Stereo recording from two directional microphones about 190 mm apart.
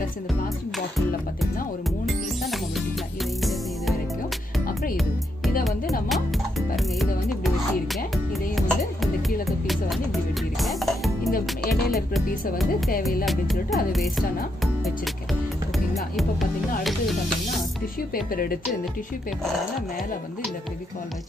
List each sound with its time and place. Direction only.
2.0 s music: centre (ahead or behind)
5.6 s music: centre (ahead or behind)
10.6 s speech: centre (ahead or behind)
11.7 s music: centre (ahead or behind)
16.2 s music: centre (ahead or behind)
18.1 s a woman's voice: 50° left (ahead or behind)